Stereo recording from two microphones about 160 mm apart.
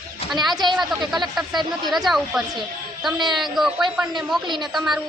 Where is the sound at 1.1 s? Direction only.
Centre (ahead or behind).